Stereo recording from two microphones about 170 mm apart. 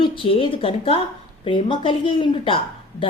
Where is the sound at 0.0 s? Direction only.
30° left (ahead or behind).